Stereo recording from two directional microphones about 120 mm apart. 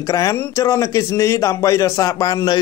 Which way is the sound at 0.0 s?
25° left (ahead or behind).